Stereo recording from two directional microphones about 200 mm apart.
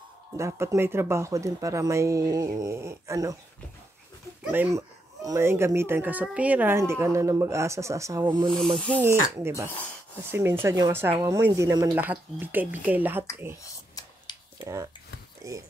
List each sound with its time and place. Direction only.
0.4 s a woman's voice: 15° right (ahead or behind)
4.5 s a woman's voice: 10° right (ahead or behind)
8.7 s speech: 5° left (ahead or behind)
9.4 s a woman's voice: 15° right (ahead or behind)
14.6 s speech: 15° right (ahead or behind)